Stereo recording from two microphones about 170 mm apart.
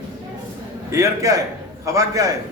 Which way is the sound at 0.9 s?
20° right (ahead or behind).